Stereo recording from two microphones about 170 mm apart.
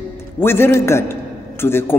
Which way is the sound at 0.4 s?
15° left (ahead or behind).